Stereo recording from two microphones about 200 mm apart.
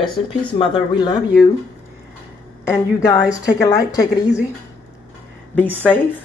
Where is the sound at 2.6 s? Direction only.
15° left (ahead or behind).